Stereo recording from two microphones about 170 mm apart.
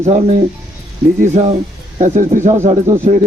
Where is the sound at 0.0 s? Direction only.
40° right (ahead or behind).